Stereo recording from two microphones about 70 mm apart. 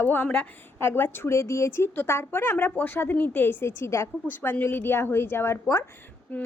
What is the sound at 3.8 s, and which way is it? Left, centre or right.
Speech, left.